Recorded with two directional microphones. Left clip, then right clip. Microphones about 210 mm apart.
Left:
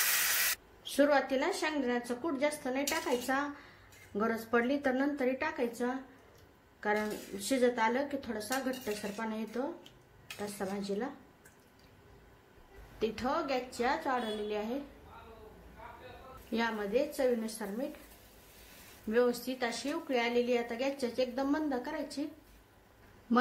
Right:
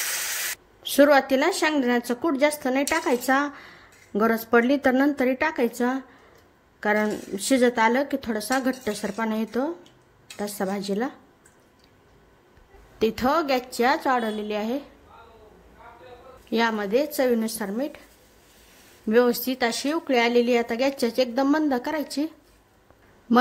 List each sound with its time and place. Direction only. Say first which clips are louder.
0.8 s a woman's voice: right 11 dB; 45° right (ahead or behind)
13.0 s a woman's voice: right 11 dB; 45° right (ahead or behind)
16.4 s a woman's voice: right 10 dB; 45° right (ahead or behind)
19.0 s a woman's voice: right 10 dB; 45° right (ahead or behind)